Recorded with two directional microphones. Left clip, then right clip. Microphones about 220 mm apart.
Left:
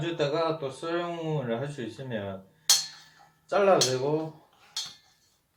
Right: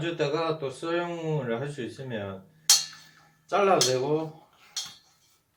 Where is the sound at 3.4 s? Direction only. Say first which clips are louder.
Even; 15° right (ahead or behind).